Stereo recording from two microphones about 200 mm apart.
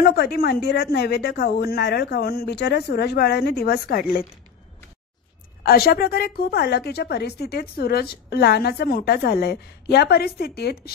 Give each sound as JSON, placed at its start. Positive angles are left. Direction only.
{"t": 0.0, "sound": "a woman's voice", "side_deg": 55}
{"t": 5.6, "sound": "a woman's voice", "side_deg": 50}